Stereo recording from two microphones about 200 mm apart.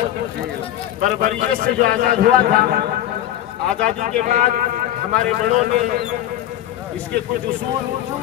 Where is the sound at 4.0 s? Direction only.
40° right (ahead or behind).